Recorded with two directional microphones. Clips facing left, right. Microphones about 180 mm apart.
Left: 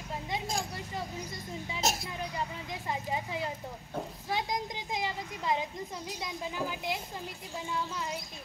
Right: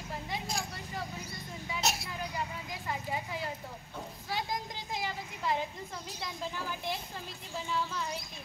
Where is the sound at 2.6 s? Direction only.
20° left (ahead or behind).